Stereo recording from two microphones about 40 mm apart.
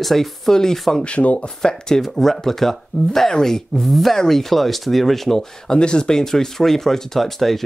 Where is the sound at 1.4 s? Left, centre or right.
Centre.